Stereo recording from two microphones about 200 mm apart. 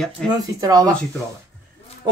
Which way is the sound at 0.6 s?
20° right (ahead or behind).